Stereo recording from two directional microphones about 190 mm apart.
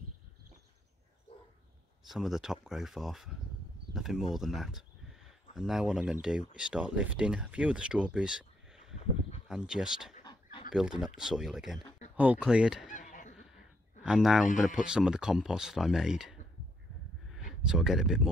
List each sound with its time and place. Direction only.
2.0 s speech: centre (ahead or behind)
10.2 s dog: 25° left (ahead or behind)
10.7 s speech: 5° right (ahead or behind)
12.9 s a sound: 40° left (ahead or behind)
14.0 s speech: 5° right (ahead or behind)
14.4 s speech: 40° left (ahead or behind)
14.8 s speech: 5° right (ahead or behind)
17.6 s speech: centre (ahead or behind)